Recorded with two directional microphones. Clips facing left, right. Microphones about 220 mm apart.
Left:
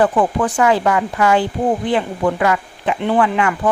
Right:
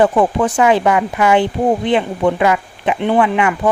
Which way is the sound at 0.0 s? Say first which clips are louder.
Right 2 dB; 20° right (ahead or behind).